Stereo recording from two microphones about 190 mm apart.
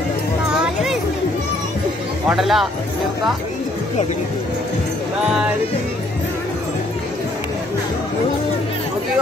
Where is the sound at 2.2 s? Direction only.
Centre (ahead or behind).